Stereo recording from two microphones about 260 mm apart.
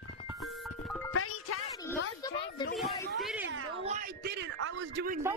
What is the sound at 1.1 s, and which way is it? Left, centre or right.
Music, left.